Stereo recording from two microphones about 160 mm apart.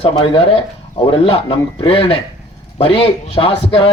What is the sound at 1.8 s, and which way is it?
Speech, 35° left (ahead or behind).